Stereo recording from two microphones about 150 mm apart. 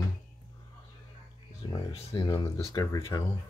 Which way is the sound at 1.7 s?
35° left (ahead or behind).